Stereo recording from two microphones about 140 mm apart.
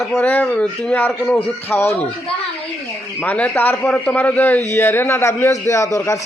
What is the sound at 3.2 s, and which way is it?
A man's voice, 10° left (ahead or behind).